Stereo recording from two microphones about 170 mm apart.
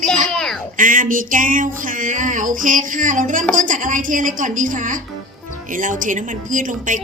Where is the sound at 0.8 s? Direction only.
50° right (ahead or behind).